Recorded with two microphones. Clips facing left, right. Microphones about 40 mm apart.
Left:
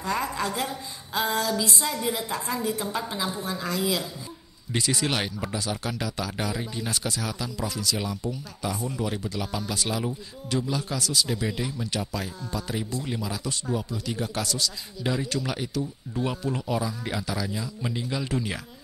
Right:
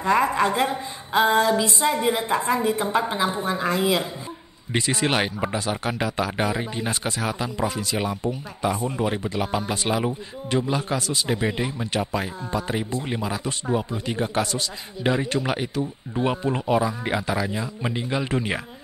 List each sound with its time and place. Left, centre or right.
0.0 s speech: right